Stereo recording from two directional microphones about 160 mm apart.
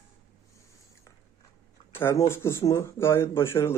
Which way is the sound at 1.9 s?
15° left (ahead or behind).